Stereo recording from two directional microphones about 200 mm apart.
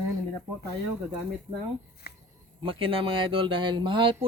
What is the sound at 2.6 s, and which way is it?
Speech, 25° right (ahead or behind).